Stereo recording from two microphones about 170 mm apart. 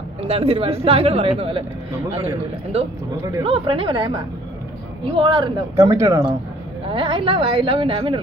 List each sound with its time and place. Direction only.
0.2 s speech: 35° right (ahead or behind)
2.7 s speech: 35° right (ahead or behind)